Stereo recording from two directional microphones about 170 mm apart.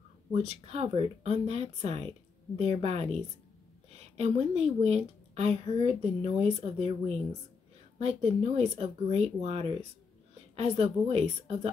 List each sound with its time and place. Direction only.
0.3 s speech: 40° right (ahead or behind)